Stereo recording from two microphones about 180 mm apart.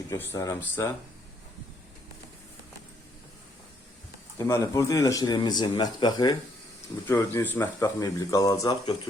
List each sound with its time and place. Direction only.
0.1 s speech: 15° left (ahead or behind)
4.4 s speech: 15° left (ahead or behind)
7.1 s speech: 10° left (ahead or behind)